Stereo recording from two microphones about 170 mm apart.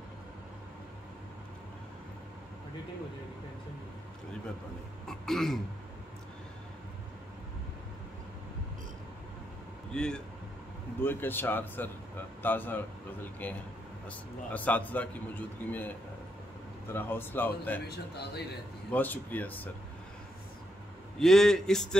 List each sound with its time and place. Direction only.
5.0 s a man's voice: centre (ahead or behind)
9.9 s a man's voice: 5° left (ahead or behind)
16.9 s a man's voice: 15° left (ahead or behind)
17.8 s a man's voice: 70° left (ahead or behind)
18.9 s a man's voice: 10° left (ahead or behind)
21.2 s a man's voice: centre (ahead or behind)